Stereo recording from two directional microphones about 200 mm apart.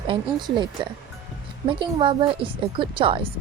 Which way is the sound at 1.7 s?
25° right (ahead or behind).